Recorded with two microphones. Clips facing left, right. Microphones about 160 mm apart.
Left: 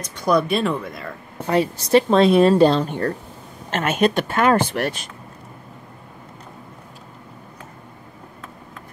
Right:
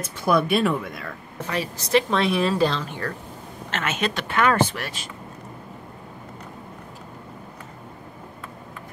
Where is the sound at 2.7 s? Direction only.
50° left (ahead or behind).